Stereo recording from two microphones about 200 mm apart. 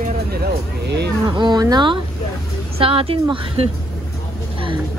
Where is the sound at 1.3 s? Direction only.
20° right (ahead or behind).